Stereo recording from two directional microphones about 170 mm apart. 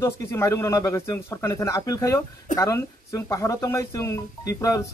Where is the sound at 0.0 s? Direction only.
15° left (ahead or behind).